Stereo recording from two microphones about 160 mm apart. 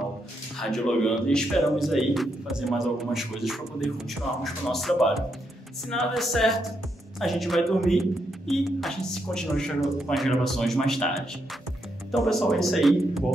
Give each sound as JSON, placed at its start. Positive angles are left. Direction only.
{"t": 0.6, "sound": "a man's voice", "side_deg": 5}